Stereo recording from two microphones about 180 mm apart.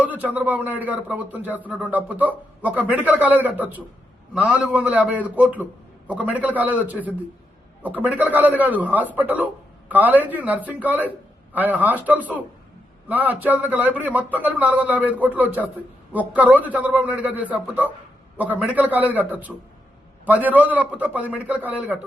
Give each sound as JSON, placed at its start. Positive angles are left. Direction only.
{"t": 0.0, "sound": "speech", "side_deg": -10}